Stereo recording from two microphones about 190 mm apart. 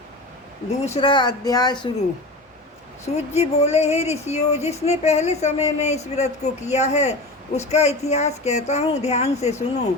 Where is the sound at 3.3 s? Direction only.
35° left (ahead or behind).